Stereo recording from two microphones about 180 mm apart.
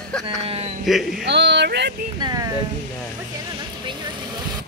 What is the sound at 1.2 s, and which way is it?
Speech, 70° right (ahead or behind).